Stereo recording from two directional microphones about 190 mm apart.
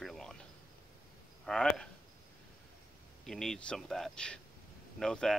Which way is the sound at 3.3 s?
5° left (ahead or behind).